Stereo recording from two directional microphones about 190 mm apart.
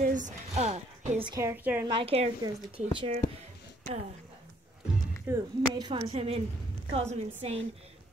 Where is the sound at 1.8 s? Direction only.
30° right (ahead or behind).